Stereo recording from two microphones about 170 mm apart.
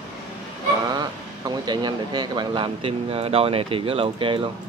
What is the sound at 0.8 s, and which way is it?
Speech, 25° right (ahead or behind).